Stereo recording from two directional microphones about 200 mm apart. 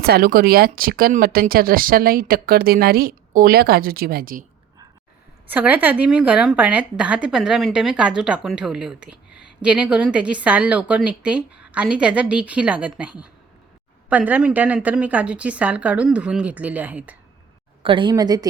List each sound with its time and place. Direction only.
0.0 s speech: 50° right (ahead or behind)
5.5 s speech: 10° right (ahead or behind)
9.3 s a sound: 60° left (ahead or behind)
9.6 s a woman's voice: 5° right (ahead or behind)
17.8 s a woman's voice: 25° right (ahead or behind)